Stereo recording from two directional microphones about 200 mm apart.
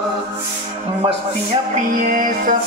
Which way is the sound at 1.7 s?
45° right (ahead or behind).